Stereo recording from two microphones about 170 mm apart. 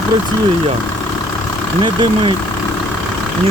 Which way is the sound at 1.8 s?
25° right (ahead or behind).